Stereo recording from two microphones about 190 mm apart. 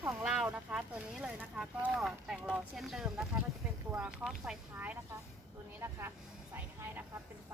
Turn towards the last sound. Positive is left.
turn(degrees=-10)  # may be behind; listen again after turning